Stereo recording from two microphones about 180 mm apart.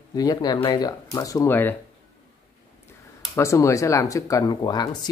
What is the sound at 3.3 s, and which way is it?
Speech, 15° left (ahead or behind).